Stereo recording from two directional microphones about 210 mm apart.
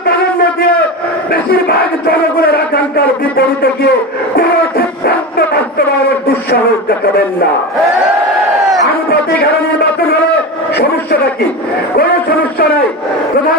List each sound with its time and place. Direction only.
2.0 s music: 45° left (ahead or behind)
10.8 s a man's voice: 50° left (ahead or behind)